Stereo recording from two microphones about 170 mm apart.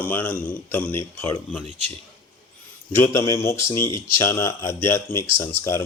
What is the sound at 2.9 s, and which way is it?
A man's voice, 15° left (ahead or behind).